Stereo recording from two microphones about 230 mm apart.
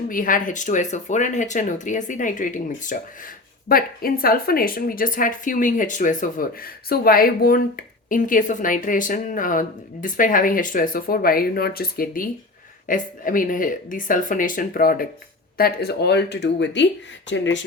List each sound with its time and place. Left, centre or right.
0.1 s speech: left